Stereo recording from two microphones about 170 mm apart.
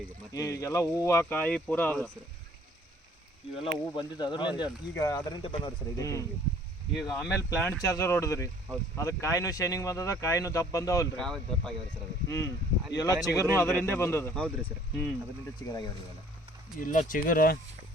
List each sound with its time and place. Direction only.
0.3 s speech: 20° left (ahead or behind)
3.6 s speech: 25° left (ahead or behind)
6.9 s speech: centre (ahead or behind)
7.3 s speech: 15° left (ahead or behind)
11.2 s speech: 5° left (ahead or behind)
12.3 s speech: 20° left (ahead or behind)
15.5 s speech: 20° left (ahead or behind)
16.8 s speech: 50° left (ahead or behind)